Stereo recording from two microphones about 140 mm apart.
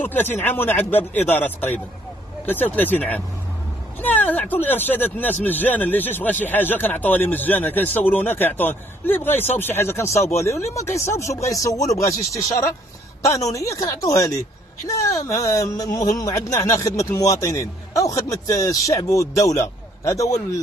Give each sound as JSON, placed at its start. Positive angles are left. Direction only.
{"t": 0.4, "sound": "a man's voice", "side_deg": 15}